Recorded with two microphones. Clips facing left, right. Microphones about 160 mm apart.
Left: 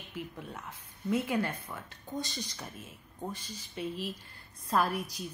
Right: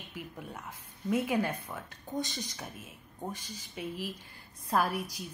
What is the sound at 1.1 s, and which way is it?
A woman's voice, 10° right (ahead or behind).